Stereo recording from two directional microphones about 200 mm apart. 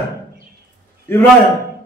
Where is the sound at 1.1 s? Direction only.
10° left (ahead or behind).